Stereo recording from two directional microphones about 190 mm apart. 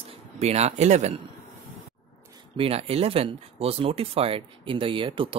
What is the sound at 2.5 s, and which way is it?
Speech, 30° right (ahead or behind).